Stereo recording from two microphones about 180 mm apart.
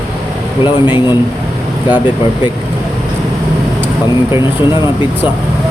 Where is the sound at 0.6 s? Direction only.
25° left (ahead or behind).